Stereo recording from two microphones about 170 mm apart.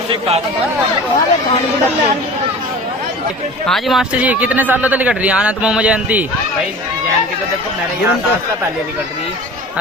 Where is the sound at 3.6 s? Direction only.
Centre (ahead or behind).